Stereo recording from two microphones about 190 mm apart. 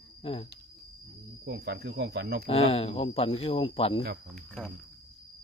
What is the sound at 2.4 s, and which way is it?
Speech, 30° left (ahead or behind).